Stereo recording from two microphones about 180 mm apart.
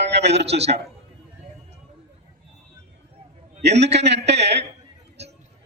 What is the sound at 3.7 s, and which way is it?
Speech, 35° right (ahead or behind).